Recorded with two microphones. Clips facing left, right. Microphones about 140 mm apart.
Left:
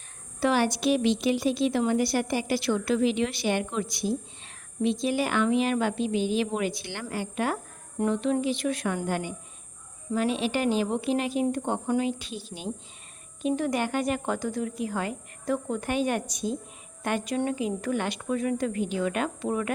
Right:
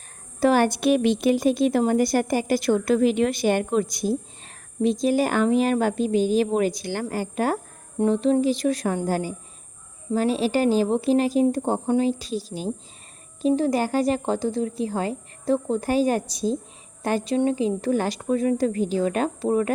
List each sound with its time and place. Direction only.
0.3 s a woman's voice: 45° right (ahead or behind)